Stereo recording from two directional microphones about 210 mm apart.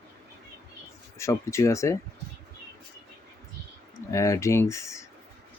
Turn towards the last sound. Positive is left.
turn(degrees=15)  # may be behind; listen again after turning